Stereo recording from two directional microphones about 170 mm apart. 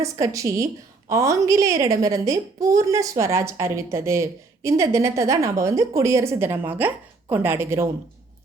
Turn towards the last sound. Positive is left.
turn(degrees=-15)  # may be behind; listen again after turning